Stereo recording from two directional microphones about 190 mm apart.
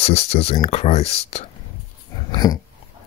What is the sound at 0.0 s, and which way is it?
Speech, 35° left (ahead or behind).